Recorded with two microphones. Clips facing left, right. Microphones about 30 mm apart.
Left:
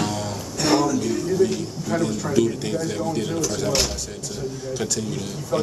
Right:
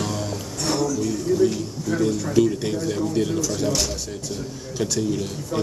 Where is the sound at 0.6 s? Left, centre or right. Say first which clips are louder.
Left 4 dB; left.